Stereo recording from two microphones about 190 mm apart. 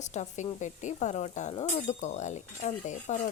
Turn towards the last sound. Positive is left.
turn(degrees=40)  # may be behind; listen again after turning